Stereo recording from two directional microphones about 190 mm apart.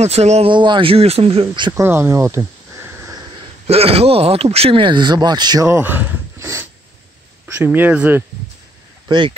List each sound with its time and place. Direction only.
0.0 s speech: 35° right (ahead or behind)
1.8 s a sound: 15° right (ahead or behind)
3.6 s speech: 30° right (ahead or behind); by 8.2 s 10° right (ahead or behind)